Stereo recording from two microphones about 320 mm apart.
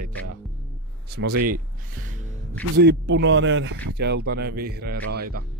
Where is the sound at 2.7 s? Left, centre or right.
Right.